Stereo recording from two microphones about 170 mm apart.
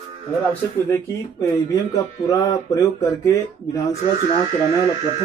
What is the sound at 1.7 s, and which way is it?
Speech, 20° left (ahead or behind).